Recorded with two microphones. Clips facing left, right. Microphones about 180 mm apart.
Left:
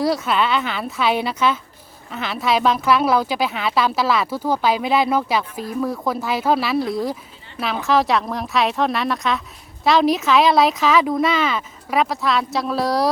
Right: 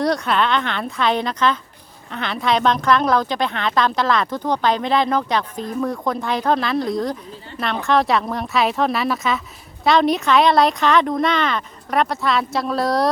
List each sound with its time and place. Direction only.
0.0 s speech: 5° left (ahead or behind)